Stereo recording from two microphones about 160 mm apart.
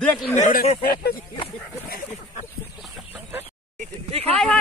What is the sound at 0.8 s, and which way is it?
Speech, 75° left (ahead or behind).